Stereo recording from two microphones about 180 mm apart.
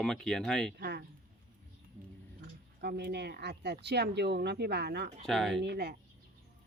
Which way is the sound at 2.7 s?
65° right (ahead or behind).